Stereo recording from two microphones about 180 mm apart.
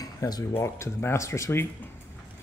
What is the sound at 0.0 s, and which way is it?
Speech, 20° left (ahead or behind).